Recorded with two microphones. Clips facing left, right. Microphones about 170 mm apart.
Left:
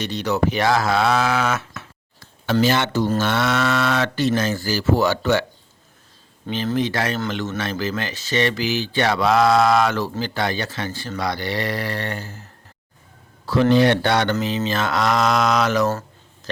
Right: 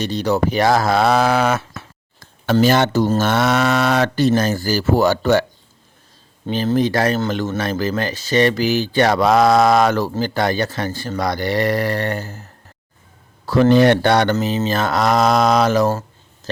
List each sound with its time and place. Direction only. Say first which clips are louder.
0.0 s speech: right 3 dB; 35° right (ahead or behind)
2.5 s mantra: right 4 dB; 45° right (ahead or behind)
3.2 s speech: right 4 dB; 40° right (ahead or behind)
6.5 s speech: right 5 dB; 40° right (ahead or behind)
7.6 s mantra: right 5 dB; 40° right (ahead or behind)
13.4 s mantra: right 3 dB; 45° right (ahead or behind)
14.4 s speech: right 3 dB; 45° right (ahead or behind)